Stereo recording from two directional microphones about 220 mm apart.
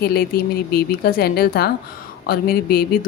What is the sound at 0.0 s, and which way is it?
Speech, 45° left (ahead or behind).